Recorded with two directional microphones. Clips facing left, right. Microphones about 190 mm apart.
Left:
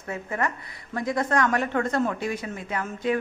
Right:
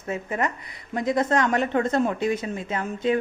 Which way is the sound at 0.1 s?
20° right (ahead or behind).